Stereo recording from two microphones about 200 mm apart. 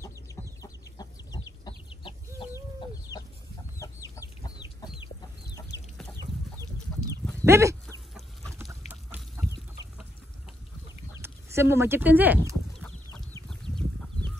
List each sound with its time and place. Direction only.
0.0 s chicken: 15° left (ahead or behind)
5.7 s chicken: 60° left (ahead or behind)
6.1 s chicken: 20° right (ahead or behind)
7.4 s dog: 15° right (ahead or behind)
8.5 s chicken: 10° right (ahead or behind)
11.1 s speech: 15° right (ahead or behind)
12.8 s chicken: 5° left (ahead or behind)